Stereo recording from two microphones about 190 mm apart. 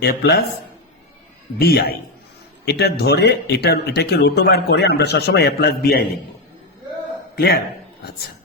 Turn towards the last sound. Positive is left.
turn(degrees=55)  # may be behind; listen again after turning